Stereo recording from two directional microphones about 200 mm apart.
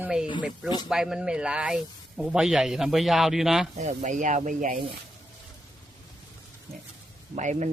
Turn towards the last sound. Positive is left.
turn(degrees=-35)  # may be behind; listen again after turning